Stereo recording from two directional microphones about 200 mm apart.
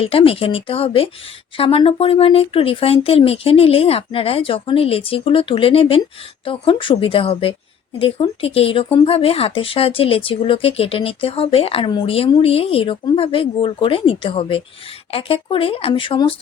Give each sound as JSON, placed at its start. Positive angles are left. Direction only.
{"t": 0.0, "sound": "speech", "side_deg": 30}